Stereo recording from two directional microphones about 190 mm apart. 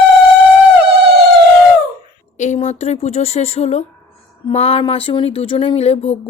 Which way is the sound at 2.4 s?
35° left (ahead or behind).